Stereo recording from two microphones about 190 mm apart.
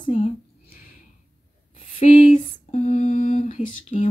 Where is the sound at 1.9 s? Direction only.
35° left (ahead or behind).